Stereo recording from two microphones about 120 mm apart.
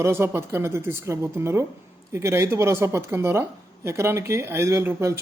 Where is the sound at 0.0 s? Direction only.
20° right (ahead or behind).